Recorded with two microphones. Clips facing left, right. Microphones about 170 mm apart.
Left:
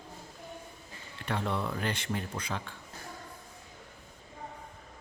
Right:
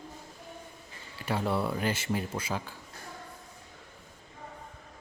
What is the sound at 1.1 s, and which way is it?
Speech, 5° right (ahead or behind).